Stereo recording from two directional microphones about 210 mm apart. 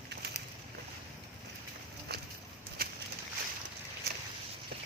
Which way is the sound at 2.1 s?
50° right (ahead or behind).